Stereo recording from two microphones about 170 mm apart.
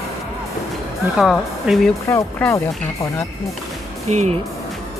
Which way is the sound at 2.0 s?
15° left (ahead or behind).